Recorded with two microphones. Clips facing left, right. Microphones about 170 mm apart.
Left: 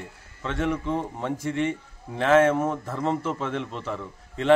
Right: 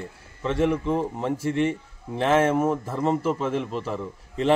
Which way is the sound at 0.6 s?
5° right (ahead or behind).